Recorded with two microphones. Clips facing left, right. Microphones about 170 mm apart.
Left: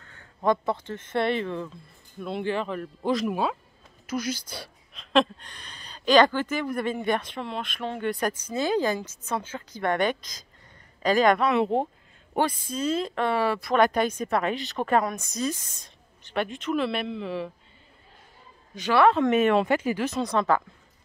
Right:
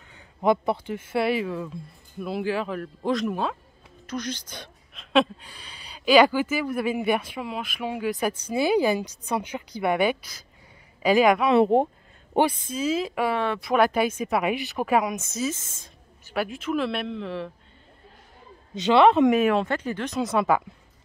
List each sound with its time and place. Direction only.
0.0 s a woman's voice: 15° right (ahead or behind); by 4.6 s 10° left (ahead or behind)
4.9 s speech: 5° right (ahead or behind)
11.6 s speech: 55° right (ahead or behind)
12.4 s speech: 10° right (ahead or behind)
15.5 s a woman's voice: 25° right (ahead or behind)
16.3 s speech: 5° right (ahead or behind)
18.8 s a woman's voice: 20° right (ahead or behind)
19.3 s a woman's voice: centre (ahead or behind)
20.2 s speech: 5° right (ahead or behind)